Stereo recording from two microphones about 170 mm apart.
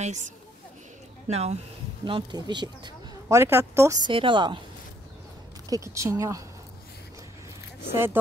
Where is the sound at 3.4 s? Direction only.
15° right (ahead or behind).